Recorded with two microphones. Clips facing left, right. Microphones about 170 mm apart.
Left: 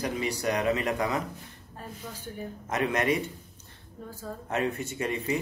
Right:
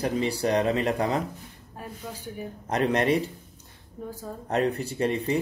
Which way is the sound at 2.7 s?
35° right (ahead or behind).